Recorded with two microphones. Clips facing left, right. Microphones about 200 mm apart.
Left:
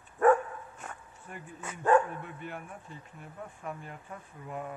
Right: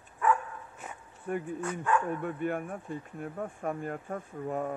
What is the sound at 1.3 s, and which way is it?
Speech, 50° right (ahead or behind).